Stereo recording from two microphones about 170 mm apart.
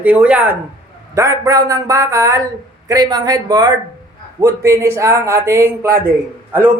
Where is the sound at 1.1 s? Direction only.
20° right (ahead or behind).